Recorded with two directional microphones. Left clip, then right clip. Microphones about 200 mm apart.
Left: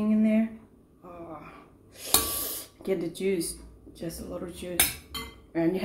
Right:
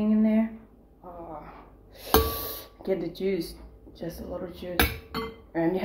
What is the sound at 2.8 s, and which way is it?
Speech, 15° left (ahead or behind).